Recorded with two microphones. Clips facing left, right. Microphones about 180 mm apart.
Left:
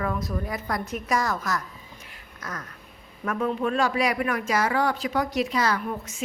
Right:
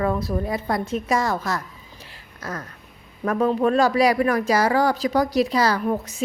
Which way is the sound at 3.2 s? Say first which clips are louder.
Right 6 dB; 35° right (ahead or behind).